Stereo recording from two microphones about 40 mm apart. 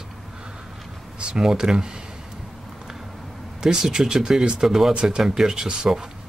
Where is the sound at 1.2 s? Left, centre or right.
Centre.